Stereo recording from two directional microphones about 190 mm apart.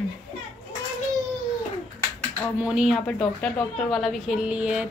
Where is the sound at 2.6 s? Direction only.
5° right (ahead or behind).